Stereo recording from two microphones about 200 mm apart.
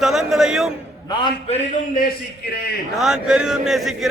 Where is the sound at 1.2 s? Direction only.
30° left (ahead or behind).